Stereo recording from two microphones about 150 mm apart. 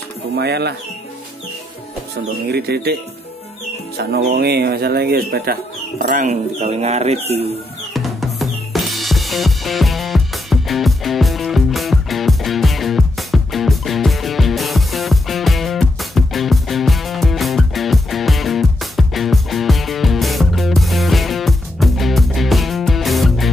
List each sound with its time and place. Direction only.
0.4 s speech: 90° right
2.5 s speech: 90° right
6.0 s speech: 55° right (ahead or behind)
7.9 s drum: centre (ahead or behind)